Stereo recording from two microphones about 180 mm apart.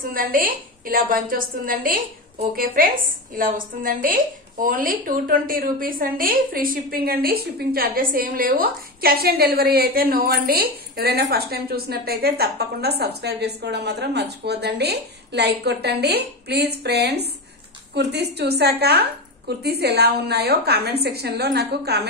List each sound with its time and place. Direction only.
0.1 s a woman's voice: 50° right (ahead or behind)